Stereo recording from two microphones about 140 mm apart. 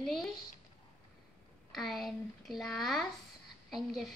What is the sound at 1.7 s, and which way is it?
A woman's voice, centre (ahead or behind).